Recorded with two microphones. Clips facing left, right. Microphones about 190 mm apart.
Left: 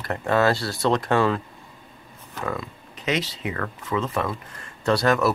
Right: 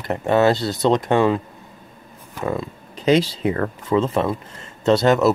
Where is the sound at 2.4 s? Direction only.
30° right (ahead or behind).